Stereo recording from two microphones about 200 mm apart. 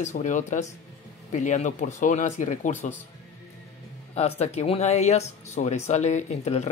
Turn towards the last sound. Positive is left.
turn(degrees=35)  # may be behind; listen again after turning